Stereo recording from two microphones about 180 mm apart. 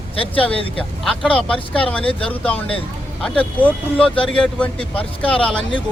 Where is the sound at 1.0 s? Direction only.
5° left (ahead or behind).